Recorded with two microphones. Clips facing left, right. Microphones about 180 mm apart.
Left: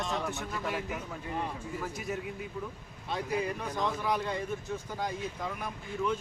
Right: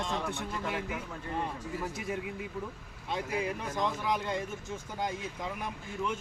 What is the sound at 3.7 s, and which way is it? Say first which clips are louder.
Speech: left 1 dB; 20° right (ahead or behind).